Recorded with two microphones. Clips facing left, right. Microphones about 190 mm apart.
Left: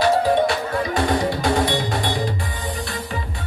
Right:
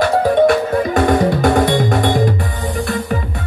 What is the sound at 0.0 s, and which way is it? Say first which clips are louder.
Music: right 5 dB; 45° right (ahead or behind).